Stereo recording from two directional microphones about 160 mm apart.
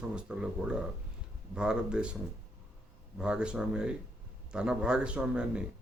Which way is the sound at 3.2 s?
5° right (ahead or behind).